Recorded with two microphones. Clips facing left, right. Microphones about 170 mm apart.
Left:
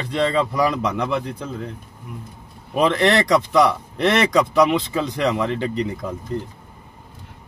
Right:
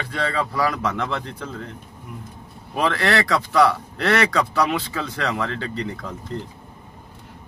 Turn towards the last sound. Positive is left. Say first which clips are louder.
# left 5 dB
turn(degrees=15)  # may be behind; listen again after turning